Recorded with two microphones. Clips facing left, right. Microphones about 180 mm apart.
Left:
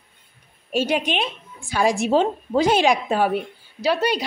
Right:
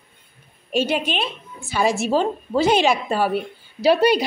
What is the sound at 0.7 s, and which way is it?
A woman's voice, 10° left (ahead or behind).